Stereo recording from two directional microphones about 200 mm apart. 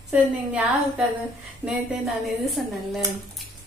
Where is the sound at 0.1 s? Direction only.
5° right (ahead or behind).